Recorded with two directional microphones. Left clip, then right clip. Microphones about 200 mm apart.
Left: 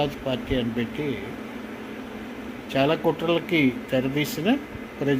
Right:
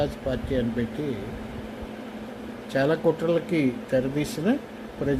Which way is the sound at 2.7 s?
15° right (ahead or behind).